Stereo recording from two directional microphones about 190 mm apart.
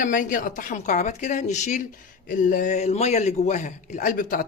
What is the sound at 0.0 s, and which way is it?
Speech, 45° left (ahead or behind).